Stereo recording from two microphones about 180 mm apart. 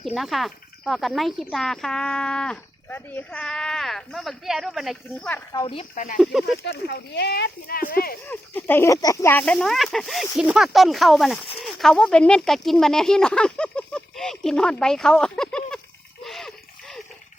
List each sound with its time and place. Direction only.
0.0 s speech: centre (ahead or behind)
5.9 s speech: 45° left (ahead or behind)
6.6 s speech: 65° left (ahead or behind)
8.3 s speech: 10° left (ahead or behind)
16.2 s splash: centre (ahead or behind)